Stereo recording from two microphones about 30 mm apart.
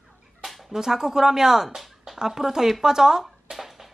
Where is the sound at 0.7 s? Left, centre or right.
Centre.